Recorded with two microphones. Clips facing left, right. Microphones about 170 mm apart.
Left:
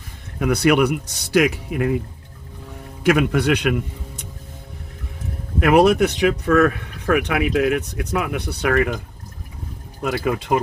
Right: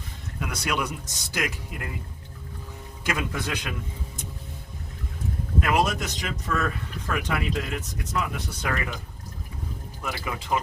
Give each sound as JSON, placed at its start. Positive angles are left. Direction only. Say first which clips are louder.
{"t": 0.3, "sound": "speech", "louder": "left 13 dB", "side_deg": 60}
{"t": 3.0, "sound": "speech", "louder": "left 12 dB", "side_deg": 65}
{"t": 5.5, "sound": "speech", "louder": "left 10 dB", "side_deg": 65}
{"t": 10.0, "sound": "speech", "louder": "left 11 dB", "side_deg": 65}